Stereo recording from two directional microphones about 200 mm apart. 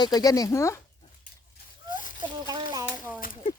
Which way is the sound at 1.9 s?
40° left (ahead or behind).